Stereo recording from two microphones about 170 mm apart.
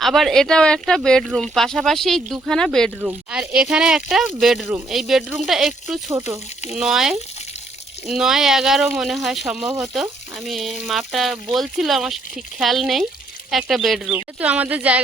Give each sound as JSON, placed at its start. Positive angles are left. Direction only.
{"t": 0.0, "sound": "speech", "side_deg": 0}
{"t": 6.1, "sound": "speech", "side_deg": -20}
{"t": 6.7, "sound": "speech", "side_deg": -5}